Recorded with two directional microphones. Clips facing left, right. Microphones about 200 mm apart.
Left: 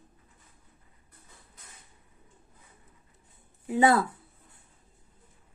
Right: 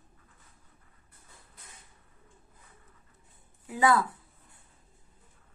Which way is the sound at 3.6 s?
25° left (ahead or behind).